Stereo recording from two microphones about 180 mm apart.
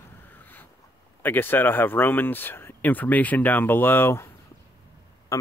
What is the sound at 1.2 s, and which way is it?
Speech, 10° left (ahead or behind).